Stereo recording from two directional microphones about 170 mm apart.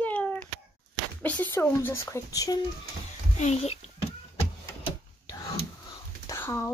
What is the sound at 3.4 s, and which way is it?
Speech, 40° left (ahead or behind).